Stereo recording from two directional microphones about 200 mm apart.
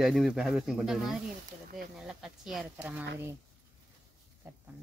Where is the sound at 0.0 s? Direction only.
Centre (ahead or behind).